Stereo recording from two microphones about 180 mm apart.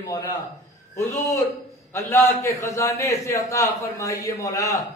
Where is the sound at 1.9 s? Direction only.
15° left (ahead or behind).